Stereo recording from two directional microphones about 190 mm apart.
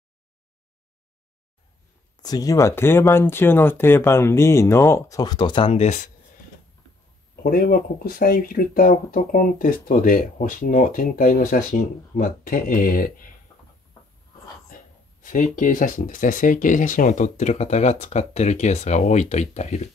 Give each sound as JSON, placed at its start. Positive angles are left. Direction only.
{"t": 2.2, "sound": "speech", "side_deg": 20}
{"t": 7.4, "sound": "speech", "side_deg": 50}
{"t": 15.2, "sound": "speech", "side_deg": 45}